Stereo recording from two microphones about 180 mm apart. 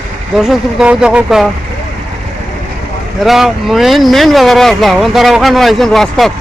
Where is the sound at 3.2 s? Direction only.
Centre (ahead or behind).